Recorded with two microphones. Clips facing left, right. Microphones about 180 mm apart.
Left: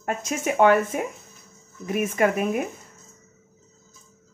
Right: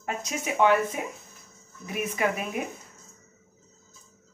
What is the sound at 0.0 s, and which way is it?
Speech, 50° left (ahead or behind).